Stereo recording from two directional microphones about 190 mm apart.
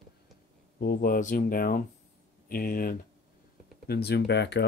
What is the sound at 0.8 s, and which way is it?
Speech, 50° left (ahead or behind).